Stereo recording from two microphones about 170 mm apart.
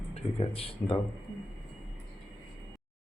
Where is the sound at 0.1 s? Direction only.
35° left (ahead or behind).